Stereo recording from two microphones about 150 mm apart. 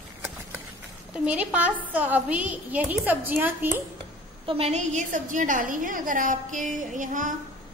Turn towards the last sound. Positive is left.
turn(degrees=-60)  # may be behind; listen again after turning